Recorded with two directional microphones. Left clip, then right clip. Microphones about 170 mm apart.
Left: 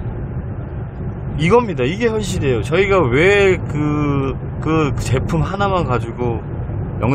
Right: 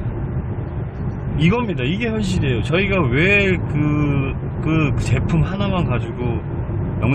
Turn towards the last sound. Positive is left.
turn(degrees=30)  # may be behind; listen again after turning